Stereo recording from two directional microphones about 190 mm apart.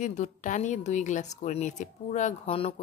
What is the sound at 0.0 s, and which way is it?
Speech, 40° left (ahead or behind).